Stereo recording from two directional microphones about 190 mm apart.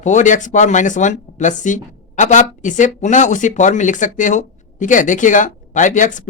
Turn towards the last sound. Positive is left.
turn(degrees=40)  # may be behind; listen again after turning